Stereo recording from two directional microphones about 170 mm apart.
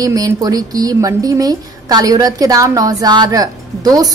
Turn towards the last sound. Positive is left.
turn(degrees=-20)  # may be behind; listen again after turning